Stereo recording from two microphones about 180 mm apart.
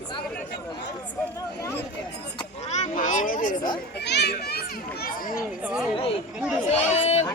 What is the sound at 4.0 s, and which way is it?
A child's voice, 70° left (ahead or behind).